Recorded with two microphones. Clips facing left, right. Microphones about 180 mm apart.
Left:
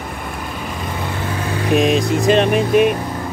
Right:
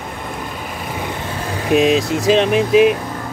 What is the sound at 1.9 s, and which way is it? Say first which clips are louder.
Speech: even; 50° left (ahead or behind).